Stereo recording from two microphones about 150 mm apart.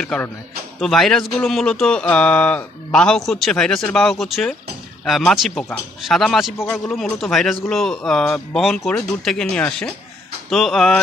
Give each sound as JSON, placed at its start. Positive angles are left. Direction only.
{"t": 0.0, "sound": "a man's voice", "side_deg": 10}
{"t": 5.5, "sound": "a man's voice", "side_deg": 15}
{"t": 6.0, "sound": "speech", "side_deg": 0}
{"t": 6.5, "sound": "a man's voice", "side_deg": 15}
{"t": 6.9, "sound": "speech", "side_deg": 0}